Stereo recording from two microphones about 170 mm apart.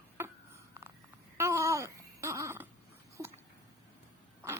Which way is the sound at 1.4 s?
15° right (ahead or behind).